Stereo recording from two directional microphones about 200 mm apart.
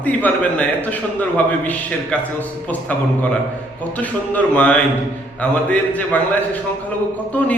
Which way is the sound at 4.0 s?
5° left (ahead or behind).